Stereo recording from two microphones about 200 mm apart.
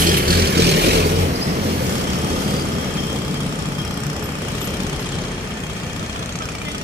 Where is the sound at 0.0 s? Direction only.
50° right (ahead or behind).